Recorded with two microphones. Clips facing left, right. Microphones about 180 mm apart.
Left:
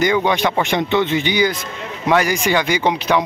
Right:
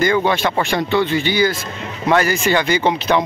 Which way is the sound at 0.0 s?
15° left (ahead or behind).